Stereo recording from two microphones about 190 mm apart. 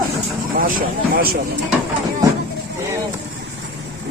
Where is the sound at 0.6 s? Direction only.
45° right (ahead or behind).